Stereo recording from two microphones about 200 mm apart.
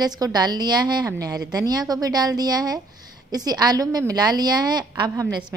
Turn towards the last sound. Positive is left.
turn(degrees=-20)  # may be behind; listen again after turning